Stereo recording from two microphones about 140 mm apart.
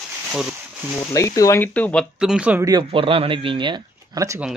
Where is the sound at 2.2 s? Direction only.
5° right (ahead or behind).